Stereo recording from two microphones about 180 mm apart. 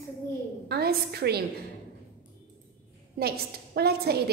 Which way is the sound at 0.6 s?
60° right (ahead or behind).